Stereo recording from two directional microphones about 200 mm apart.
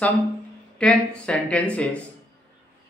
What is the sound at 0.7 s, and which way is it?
Speech, 5° left (ahead or behind).